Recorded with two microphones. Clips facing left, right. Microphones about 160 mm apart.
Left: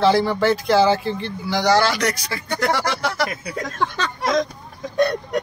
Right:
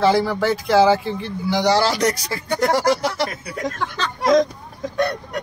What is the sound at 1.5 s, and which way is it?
Speech, 20° right (ahead or behind).